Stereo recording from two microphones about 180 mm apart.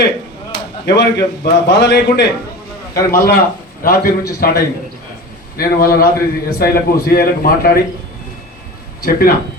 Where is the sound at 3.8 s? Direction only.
55° left (ahead or behind).